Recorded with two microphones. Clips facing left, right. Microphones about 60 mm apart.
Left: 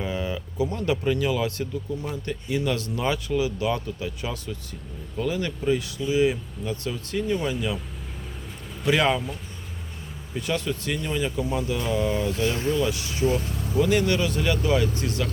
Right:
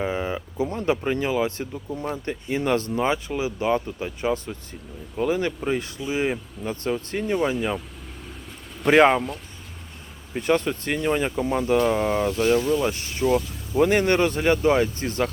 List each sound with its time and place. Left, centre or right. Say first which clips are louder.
0.0 s a sound: right 3 dB; right
0.7 s speech: right 2 dB; right
8.9 s speech: right 6 dB; right
10.3 s speech: right 5 dB; right